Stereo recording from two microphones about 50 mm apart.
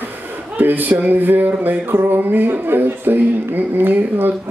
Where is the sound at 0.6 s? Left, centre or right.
Right.